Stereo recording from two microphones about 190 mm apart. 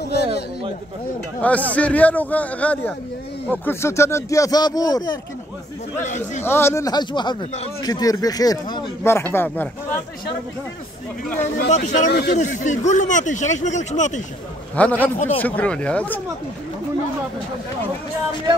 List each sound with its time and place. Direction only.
0.0 s a sound: 60° left (ahead or behind)
1.4 s speech: 10° left (ahead or behind)
6.0 s speech: 40° left (ahead or behind)
6.4 s speech: 15° left (ahead or behind)
11.7 s speech: 40° left (ahead or behind)
12.1 s speech: 60° left (ahead or behind)
12.4 s speech: 40° left (ahead or behind)
14.8 s speech: 10° left (ahead or behind)